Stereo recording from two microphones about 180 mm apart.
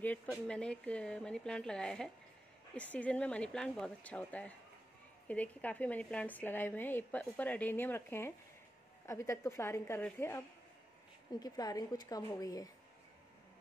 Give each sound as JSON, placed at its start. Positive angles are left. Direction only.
{"t": 0.0, "sound": "a woman's voice", "side_deg": 5}